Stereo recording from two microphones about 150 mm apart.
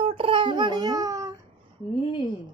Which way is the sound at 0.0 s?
40° right (ahead or behind).